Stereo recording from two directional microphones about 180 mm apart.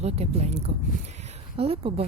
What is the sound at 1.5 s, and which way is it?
Speech, 35° right (ahead or behind).